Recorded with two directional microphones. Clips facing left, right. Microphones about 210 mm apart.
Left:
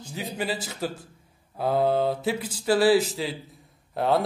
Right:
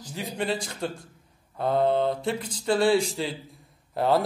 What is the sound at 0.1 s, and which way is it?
A man's voice, centre (ahead or behind).